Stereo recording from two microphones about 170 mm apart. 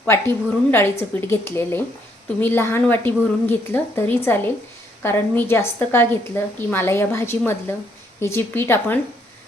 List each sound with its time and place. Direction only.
0.0 s a woman's voice: 15° left (ahead or behind)